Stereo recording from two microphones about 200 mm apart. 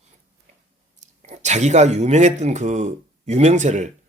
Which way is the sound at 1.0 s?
35° right (ahead or behind).